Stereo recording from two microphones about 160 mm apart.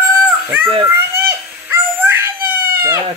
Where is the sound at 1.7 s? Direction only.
15° right (ahead or behind).